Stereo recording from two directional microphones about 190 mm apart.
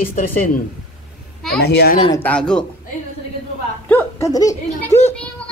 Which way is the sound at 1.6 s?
60° left (ahead or behind).